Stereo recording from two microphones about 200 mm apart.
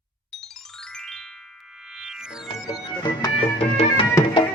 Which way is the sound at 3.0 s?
20° left (ahead or behind).